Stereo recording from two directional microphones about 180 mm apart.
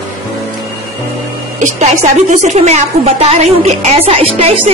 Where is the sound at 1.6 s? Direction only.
45° right (ahead or behind).